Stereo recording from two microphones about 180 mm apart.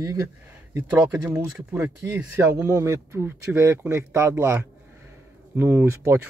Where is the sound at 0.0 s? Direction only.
20° right (ahead or behind).